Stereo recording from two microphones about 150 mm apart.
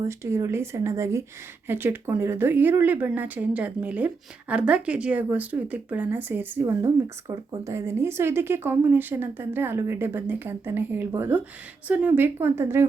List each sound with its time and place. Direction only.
0.0 s speech: 20° right (ahead or behind)